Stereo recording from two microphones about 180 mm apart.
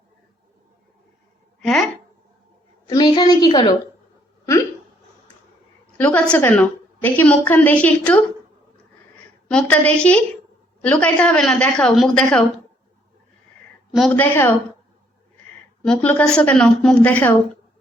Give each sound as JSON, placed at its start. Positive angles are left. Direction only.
{"t": 2.8, "sound": "a sound", "side_deg": 20}
{"t": 6.0, "sound": "a woman's voice", "side_deg": 10}
{"t": 9.5, "sound": "a woman's voice", "side_deg": 5}
{"t": 13.9, "sound": "a woman's voice", "side_deg": 5}
{"t": 15.8, "sound": "a woman's voice", "side_deg": 5}